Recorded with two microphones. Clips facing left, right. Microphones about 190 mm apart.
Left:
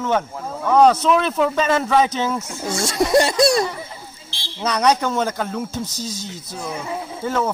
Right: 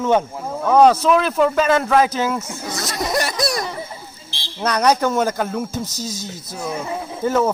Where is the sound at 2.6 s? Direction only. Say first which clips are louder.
Left 7 dB; 30° left (ahead or behind).